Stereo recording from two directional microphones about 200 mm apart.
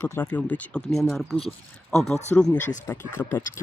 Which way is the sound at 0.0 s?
10° left (ahead or behind).